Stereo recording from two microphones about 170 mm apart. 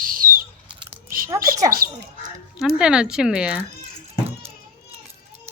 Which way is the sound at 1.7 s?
60° right (ahead or behind).